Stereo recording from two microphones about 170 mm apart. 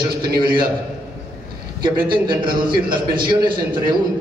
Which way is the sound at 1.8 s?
25° right (ahead or behind).